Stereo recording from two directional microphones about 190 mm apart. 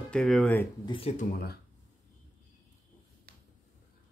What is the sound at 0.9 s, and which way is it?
Speech, 35° left (ahead or behind).